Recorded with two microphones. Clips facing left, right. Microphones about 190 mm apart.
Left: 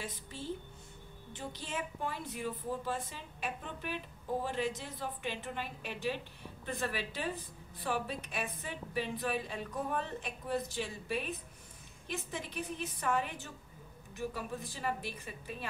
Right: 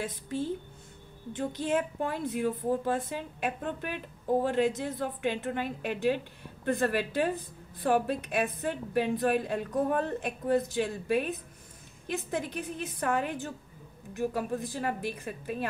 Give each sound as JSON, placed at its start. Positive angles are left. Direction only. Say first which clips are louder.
{"t": 0.0, "sound": "a woman's voice", "louder": "right 10 dB", "side_deg": -50}
{"t": 13.0, "sound": "a woman's voice", "louder": "right 5 dB", "side_deg": -50}